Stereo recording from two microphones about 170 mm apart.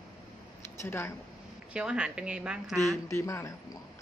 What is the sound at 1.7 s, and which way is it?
A woman's voice, 5° right (ahead or behind).